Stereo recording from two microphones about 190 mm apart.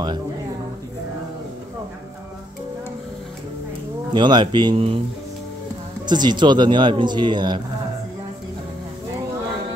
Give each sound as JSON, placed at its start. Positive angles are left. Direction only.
{"t": 4.1, "sound": "speech", "side_deg": -25}
{"t": 6.0, "sound": "speech", "side_deg": -20}